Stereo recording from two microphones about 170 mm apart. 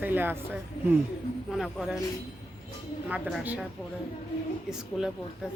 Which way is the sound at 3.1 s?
5° right (ahead or behind).